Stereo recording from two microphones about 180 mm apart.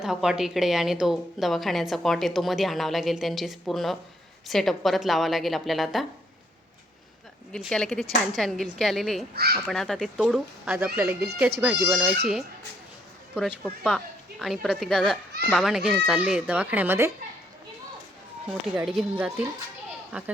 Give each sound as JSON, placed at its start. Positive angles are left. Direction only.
{"t": 0.0, "sound": "a woman's voice", "side_deg": -5}
{"t": 7.5, "sound": "a woman's voice", "side_deg": 5}
{"t": 9.3, "sound": "speech", "side_deg": -60}
{"t": 9.6, "sound": "a woman's voice", "side_deg": 0}
{"t": 13.8, "sound": "a woman's voice", "side_deg": 0}
{"t": 18.9, "sound": "speech", "side_deg": -5}